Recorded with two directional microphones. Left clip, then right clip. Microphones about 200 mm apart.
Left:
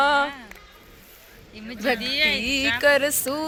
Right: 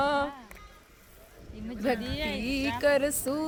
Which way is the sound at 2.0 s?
15° right (ahead or behind).